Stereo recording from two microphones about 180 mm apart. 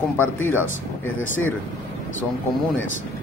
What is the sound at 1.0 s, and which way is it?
Speech, 90° left.